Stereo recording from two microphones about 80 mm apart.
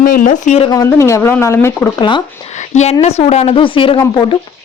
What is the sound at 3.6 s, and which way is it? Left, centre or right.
Speech, left.